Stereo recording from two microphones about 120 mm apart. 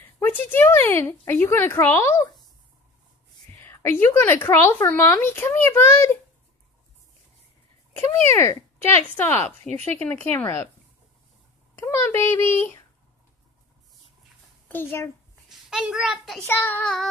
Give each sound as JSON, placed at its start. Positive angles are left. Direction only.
{"t": 0.2, "sound": "speech", "side_deg": 20}
{"t": 3.6, "sound": "speech", "side_deg": 20}
{"t": 7.9, "sound": "speech", "side_deg": 20}
{"t": 11.7, "sound": "a child's voice", "side_deg": 25}
{"t": 14.7, "sound": "speech", "side_deg": 20}
{"t": 15.7, "sound": "a child's voice", "side_deg": -5}
{"t": 16.4, "sound": "speech", "side_deg": 15}
{"t": 16.8, "sound": "a child's voice", "side_deg": 5}